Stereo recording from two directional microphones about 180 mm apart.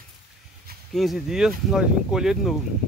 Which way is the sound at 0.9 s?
Centre (ahead or behind).